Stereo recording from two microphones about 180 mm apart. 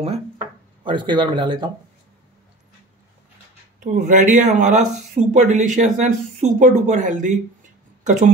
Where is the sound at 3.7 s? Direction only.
45° right (ahead or behind).